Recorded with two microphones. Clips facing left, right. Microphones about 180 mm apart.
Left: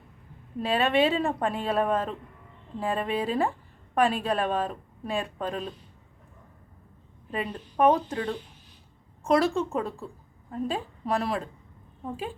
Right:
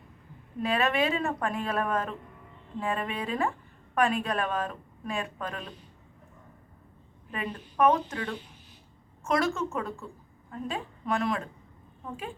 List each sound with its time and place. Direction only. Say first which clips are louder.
0.6 s speech: left 3 dB; 30° left (ahead or behind)
7.3 s speech: left 3 dB; 30° left (ahead or behind)